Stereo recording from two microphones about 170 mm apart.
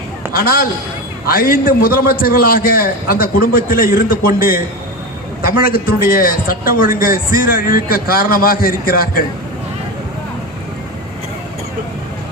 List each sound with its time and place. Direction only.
0.3 s a man's voice: 60° left (ahead or behind)